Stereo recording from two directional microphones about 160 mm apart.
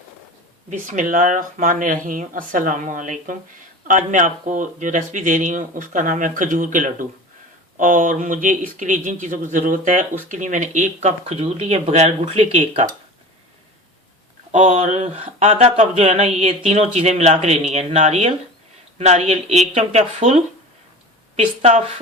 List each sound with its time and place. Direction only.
0.7 s speech: 55° right (ahead or behind)
14.5 s a woman's voice: 45° right (ahead or behind)